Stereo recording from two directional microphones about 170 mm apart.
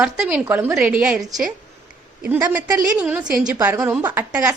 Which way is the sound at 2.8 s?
10° right (ahead or behind).